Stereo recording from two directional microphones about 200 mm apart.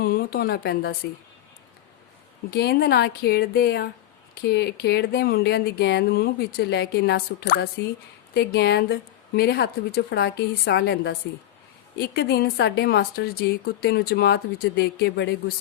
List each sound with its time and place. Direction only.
0.0 s a woman's voice: 50° left (ahead or behind)
2.5 s speech: 55° left (ahead or behind)